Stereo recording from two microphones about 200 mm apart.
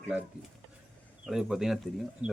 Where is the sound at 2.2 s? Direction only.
35° right (ahead or behind).